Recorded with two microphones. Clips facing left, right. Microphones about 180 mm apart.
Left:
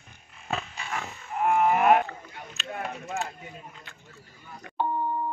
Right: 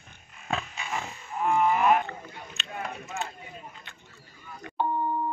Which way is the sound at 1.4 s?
55° left (ahead or behind).